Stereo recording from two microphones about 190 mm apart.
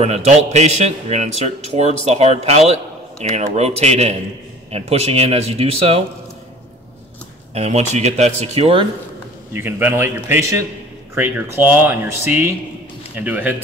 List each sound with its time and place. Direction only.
0.0 s a man's voice: 35° right (ahead or behind)
7.5 s a man's voice: 35° right (ahead or behind)
9.5 s speech: 10° right (ahead or behind)